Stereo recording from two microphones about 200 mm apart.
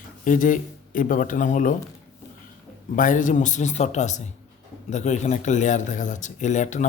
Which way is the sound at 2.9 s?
40° left (ahead or behind).